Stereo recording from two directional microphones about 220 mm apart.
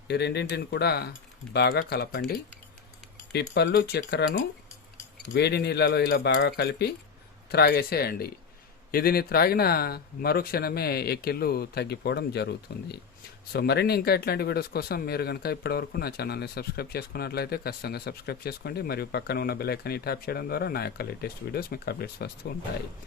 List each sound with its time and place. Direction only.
0.1 s speech: 50° left (ahead or behind)